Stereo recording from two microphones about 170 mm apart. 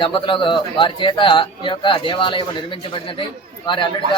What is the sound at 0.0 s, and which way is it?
A man's voice, 30° left (ahead or behind).